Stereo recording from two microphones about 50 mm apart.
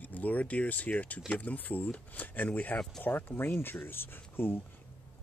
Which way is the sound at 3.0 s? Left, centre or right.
Left.